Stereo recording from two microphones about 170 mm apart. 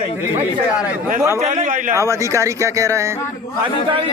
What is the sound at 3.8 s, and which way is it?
Speech, 30° right (ahead or behind).